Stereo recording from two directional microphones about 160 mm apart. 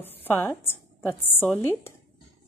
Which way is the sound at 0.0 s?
15° left (ahead or behind).